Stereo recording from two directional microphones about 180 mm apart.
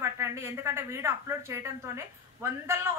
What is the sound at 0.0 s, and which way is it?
A woman's voice, 15° right (ahead or behind).